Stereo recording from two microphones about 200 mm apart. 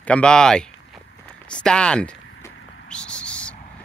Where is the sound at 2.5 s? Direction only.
65° left (ahead or behind).